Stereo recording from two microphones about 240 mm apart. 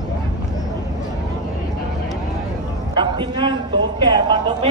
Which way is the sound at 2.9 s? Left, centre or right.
Centre.